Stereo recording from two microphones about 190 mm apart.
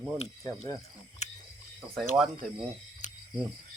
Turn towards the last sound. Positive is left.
turn(degrees=40)  # may be behind; listen again after turning